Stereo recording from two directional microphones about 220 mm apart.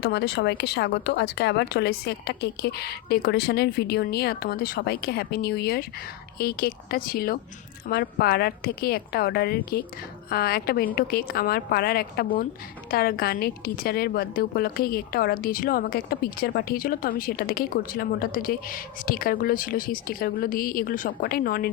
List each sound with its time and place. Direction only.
0.0 s a woman's voice: 50° left (ahead or behind)